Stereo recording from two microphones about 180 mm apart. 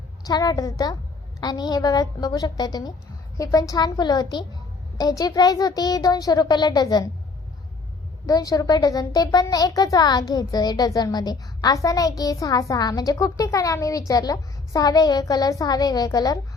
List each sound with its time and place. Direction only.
0.3 s a child's voice: 20° left (ahead or behind)
8.3 s a child's voice: 20° left (ahead or behind)